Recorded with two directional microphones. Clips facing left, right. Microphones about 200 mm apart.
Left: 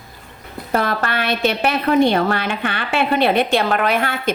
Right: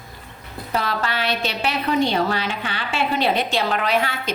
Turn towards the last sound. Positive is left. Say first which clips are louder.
# left 3 dB
turn(degrees=55)  # may be behind; listen again after turning